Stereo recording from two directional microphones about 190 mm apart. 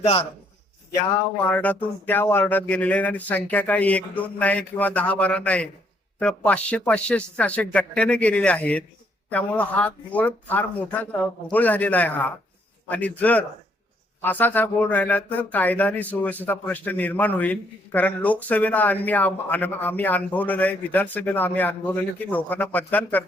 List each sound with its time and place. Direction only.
0.0 s a man's voice: 30° left (ahead or behind)
1.5 s speech: 10° left (ahead or behind)